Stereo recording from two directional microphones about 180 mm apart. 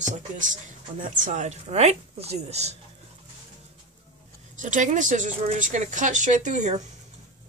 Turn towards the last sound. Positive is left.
turn(degrees=-40)  # may be behind; listen again after turning